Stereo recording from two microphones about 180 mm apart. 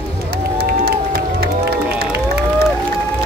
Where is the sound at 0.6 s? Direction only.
60° right (ahead or behind).